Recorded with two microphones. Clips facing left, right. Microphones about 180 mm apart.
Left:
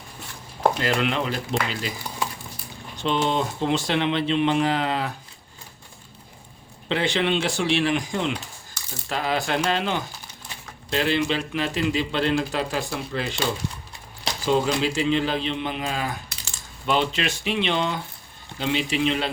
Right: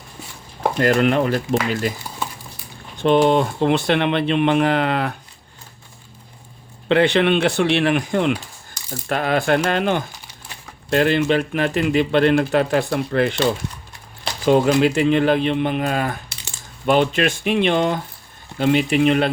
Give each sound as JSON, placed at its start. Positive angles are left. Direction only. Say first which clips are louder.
{"t": 0.8, "sound": "speech", "louder": "right 8 dB", "side_deg": -50}
{"t": 3.0, "sound": "speech", "louder": "right 8 dB", "side_deg": -55}
{"t": 6.8, "sound": "speech", "louder": "right 8 dB", "side_deg": -60}